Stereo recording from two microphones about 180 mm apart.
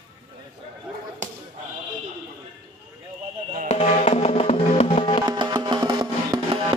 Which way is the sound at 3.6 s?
35° left (ahead or behind).